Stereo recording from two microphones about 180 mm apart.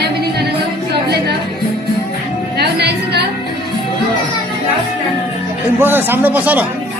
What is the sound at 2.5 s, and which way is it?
Music, 65° right (ahead or behind).